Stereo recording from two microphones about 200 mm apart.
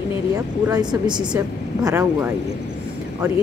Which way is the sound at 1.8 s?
10° right (ahead or behind).